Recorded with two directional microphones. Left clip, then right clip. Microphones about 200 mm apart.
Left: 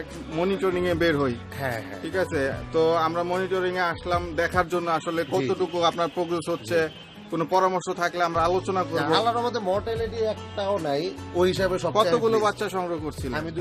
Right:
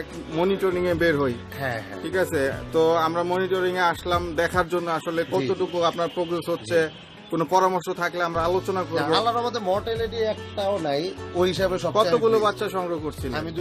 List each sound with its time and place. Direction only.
0.3 s speech: 5° left (ahead or behind)
9.0 s speech: 20° left (ahead or behind)
12.1 s speech: 5° left (ahead or behind)